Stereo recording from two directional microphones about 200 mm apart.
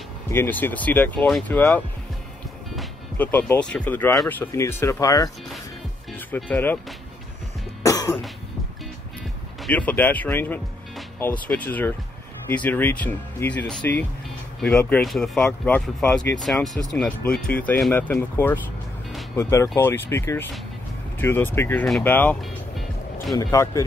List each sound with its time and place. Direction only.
0.3 s speech: 10° left (ahead or behind)
2.7 s music: 5° left (ahead or behind)
3.7 s speech: 10° left (ahead or behind)
7.8 s cough: 15° left (ahead or behind)
9.6 s speech: 5° left (ahead or behind)
23.3 s speech: 15° left (ahead or behind)